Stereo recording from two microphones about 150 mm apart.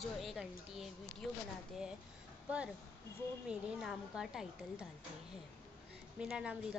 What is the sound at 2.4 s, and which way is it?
A woman's voice, 5° right (ahead or behind).